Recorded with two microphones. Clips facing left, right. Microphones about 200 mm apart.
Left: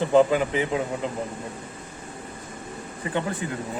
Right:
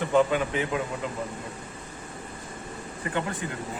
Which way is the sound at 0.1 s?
30° left (ahead or behind).